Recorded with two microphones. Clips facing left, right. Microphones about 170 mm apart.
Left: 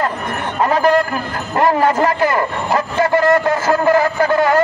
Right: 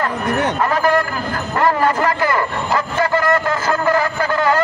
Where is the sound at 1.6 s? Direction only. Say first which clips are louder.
Left 3 dB; 25° left (ahead or behind).